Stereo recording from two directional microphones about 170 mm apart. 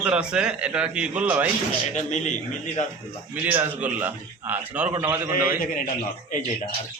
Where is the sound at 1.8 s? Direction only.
45° left (ahead or behind).